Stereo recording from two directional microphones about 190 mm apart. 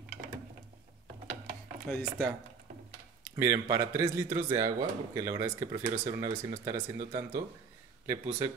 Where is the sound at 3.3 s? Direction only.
15° right (ahead or behind).